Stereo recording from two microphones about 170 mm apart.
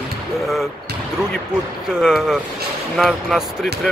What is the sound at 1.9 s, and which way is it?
Speech, 5° right (ahead or behind).